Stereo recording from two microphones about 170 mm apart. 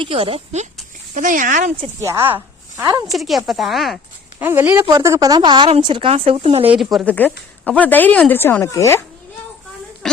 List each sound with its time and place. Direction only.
0.0 s a woman's voice: 35° right (ahead or behind)
1.1 s speech: 50° right (ahead or behind)
2.0 s a woman's voice: 15° right (ahead or behind)
3.1 s speech: centre (ahead or behind)
4.4 s a woman's voice: 10° right (ahead or behind); by 6.7 s 35° right (ahead or behind)
6.7 s speech: centre (ahead or behind); by 9.0 s 15° left (ahead or behind)